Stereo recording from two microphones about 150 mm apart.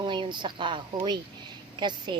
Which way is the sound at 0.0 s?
30° right (ahead or behind).